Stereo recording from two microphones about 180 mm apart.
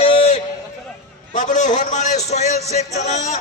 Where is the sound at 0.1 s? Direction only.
35° left (ahead or behind).